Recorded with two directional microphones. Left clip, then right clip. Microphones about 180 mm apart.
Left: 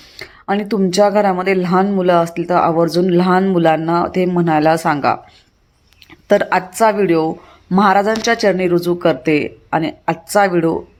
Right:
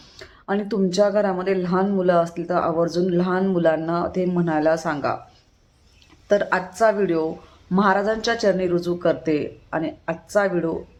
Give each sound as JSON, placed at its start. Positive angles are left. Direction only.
{"t": 0.2, "sound": "speech", "side_deg": 20}
{"t": 6.2, "sound": "speech", "side_deg": 25}